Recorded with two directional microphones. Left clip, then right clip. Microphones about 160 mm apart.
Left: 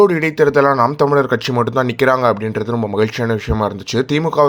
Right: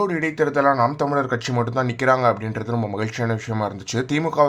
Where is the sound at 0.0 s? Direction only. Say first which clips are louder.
Left 9 dB; 25° left (ahead or behind).